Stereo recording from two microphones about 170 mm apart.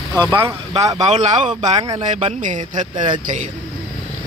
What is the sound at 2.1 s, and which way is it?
Speech, 45° right (ahead or behind).